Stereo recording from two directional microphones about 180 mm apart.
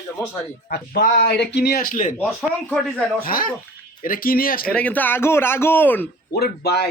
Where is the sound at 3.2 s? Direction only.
55° left (ahead or behind).